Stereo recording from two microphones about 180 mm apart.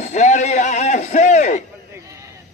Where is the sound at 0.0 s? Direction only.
40° left (ahead or behind).